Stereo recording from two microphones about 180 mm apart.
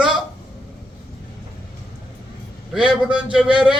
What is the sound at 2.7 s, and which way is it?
A man's voice, 5° right (ahead or behind).